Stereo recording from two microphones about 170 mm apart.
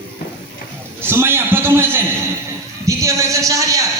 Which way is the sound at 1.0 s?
15° right (ahead or behind).